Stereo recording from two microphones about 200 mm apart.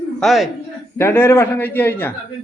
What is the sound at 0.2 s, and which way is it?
Speech, centre (ahead or behind).